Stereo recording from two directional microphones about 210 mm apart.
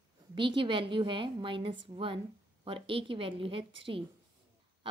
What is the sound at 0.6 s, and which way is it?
A woman's voice, 25° right (ahead or behind).